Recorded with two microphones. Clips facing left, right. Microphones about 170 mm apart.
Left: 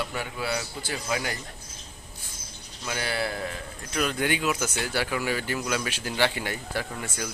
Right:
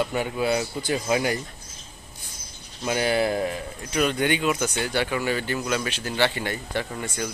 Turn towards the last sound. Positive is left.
turn(degrees=5)  # may be behind; listen again after turning